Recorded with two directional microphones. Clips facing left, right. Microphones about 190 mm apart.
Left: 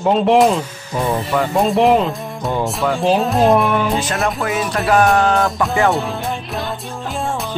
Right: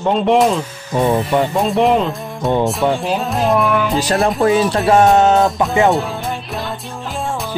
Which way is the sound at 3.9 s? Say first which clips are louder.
Right 4 dB; 35° right (ahead or behind).